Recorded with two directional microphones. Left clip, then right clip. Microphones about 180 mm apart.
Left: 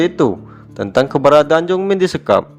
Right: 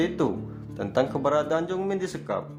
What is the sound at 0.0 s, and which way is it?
A man's voice, 40° left (ahead or behind).